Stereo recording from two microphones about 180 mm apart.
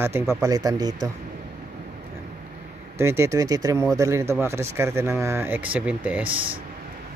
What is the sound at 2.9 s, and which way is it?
Speech, 15° right (ahead or behind).